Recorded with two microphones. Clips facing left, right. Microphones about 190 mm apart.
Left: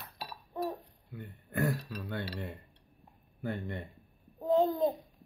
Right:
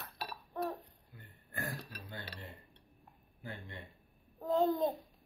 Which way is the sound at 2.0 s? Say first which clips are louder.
Left 13 dB; 65° left (ahead or behind).